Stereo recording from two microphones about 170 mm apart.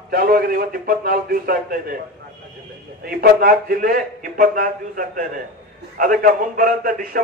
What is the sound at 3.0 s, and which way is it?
A man's voice, 60° right (ahead or behind).